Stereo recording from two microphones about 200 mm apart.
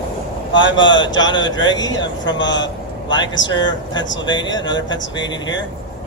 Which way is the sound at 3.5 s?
20° left (ahead or behind).